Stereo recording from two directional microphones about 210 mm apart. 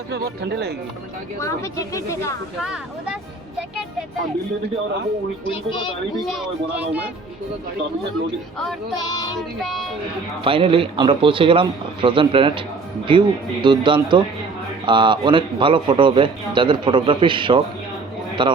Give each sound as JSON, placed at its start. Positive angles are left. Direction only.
{"t": 0.1, "sound": "speech", "side_deg": -50}
{"t": 1.4, "sound": "speech", "side_deg": 15}
{"t": 2.6, "sound": "speech", "side_deg": -5}
{"t": 5.5, "sound": "speech", "side_deg": 20}
{"t": 6.1, "sound": "speech", "side_deg": 0}
{"t": 9.0, "sound": "speech", "side_deg": 20}
{"t": 9.6, "sound": "speech", "side_deg": 0}
{"t": 10.4, "sound": "a man's voice", "side_deg": -25}